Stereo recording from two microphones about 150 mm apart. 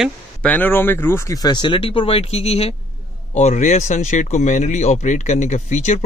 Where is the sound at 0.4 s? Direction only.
10° left (ahead or behind).